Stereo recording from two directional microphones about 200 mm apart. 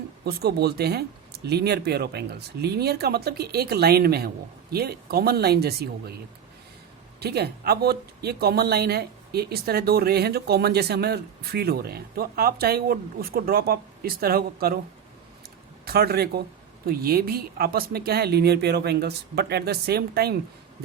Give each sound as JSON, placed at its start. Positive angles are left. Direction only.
{"t": 0.3, "sound": "speech", "side_deg": -50}
{"t": 7.2, "sound": "speech", "side_deg": -55}
{"t": 15.8, "sound": "speech", "side_deg": -50}